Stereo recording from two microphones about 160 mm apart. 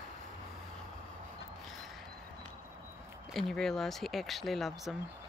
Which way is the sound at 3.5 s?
Centre (ahead or behind).